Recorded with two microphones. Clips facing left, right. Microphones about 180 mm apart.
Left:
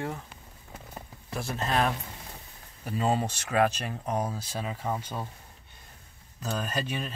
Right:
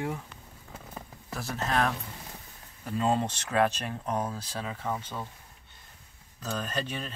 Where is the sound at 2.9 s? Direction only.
5° left (ahead or behind).